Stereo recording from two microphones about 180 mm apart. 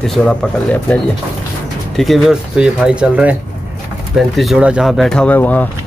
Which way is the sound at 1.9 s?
Centre (ahead or behind).